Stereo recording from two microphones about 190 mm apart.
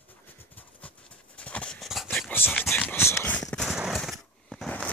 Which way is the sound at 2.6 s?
10° left (ahead or behind).